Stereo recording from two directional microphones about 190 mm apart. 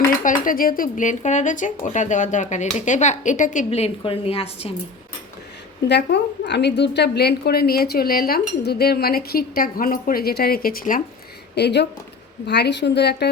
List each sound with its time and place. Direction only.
0.2 s speech: 45° left (ahead or behind)
5.9 s a woman's voice: 60° left (ahead or behind)
11.5 s a woman's voice: 60° left (ahead or behind)